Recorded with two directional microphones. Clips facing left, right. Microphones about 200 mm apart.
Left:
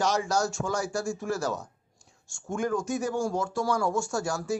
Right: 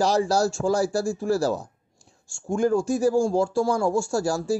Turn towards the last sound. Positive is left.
turn(degrees=-30)  # may be behind; listen again after turning